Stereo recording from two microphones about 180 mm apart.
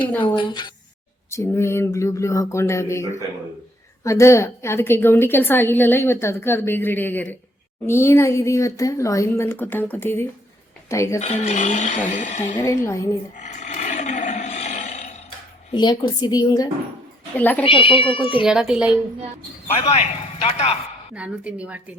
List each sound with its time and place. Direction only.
0.1 s a woman's voice: 10° left (ahead or behind)
0.3 s a woman's voice: 25° left (ahead or behind)
1.3 s a woman's voice: 15° left (ahead or behind)
11.2 s speech: 40° left (ahead or behind)
12.5 s a woman's voice: 15° left (ahead or behind)
13.3 s roar: 40° left (ahead or behind)
15.7 s a woman's voice: 25° left (ahead or behind)
17.3 s a woman's voice: 10° left (ahead or behind)
17.6 s a woman's voice: 30° left (ahead or behind)
18.4 s speech: 5° right (ahead or behind)
19.7 s speech: 35° left (ahead or behind)
21.2 s a woman's voice: 5° right (ahead or behind)